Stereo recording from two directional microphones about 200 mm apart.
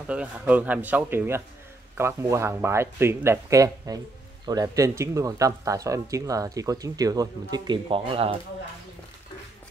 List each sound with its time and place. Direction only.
0.0 s speech: 5° right (ahead or behind); by 8.4 s 25° right (ahead or behind)